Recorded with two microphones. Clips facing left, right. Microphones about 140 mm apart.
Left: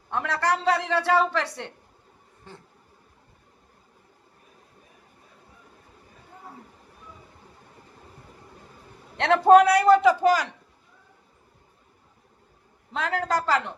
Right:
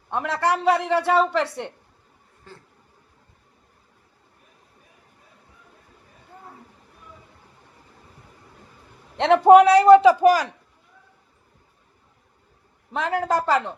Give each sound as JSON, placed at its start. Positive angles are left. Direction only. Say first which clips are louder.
{"t": 0.1, "sound": "a woman's voice", "louder": "right 2 dB", "side_deg": -20}
{"t": 2.5, "sound": "a sound", "louder": "even", "side_deg": 20}
{"t": 9.1, "sound": "a man's voice", "louder": "right 3 dB", "side_deg": -15}
{"t": 12.9, "sound": "a woman's voice", "louder": "right 3 dB", "side_deg": -20}